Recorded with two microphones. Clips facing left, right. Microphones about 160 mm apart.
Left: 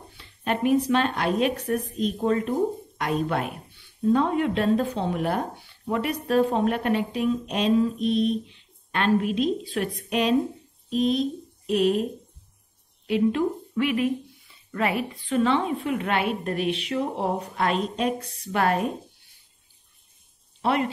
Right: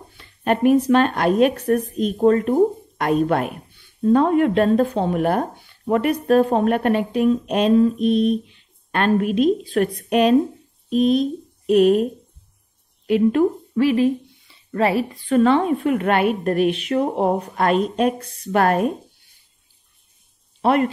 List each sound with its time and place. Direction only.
0.4 s a woman's voice: 50° right (ahead or behind)
13.7 s speech: 30° right (ahead or behind)
15.2 s a woman's voice: 50° right (ahead or behind)
20.6 s a woman's voice: 50° right (ahead or behind)